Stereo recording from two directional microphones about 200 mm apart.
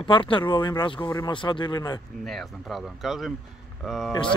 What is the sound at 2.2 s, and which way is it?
Speech, centre (ahead or behind).